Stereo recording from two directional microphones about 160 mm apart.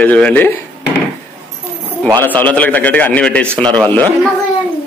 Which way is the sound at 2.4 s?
10° left (ahead or behind).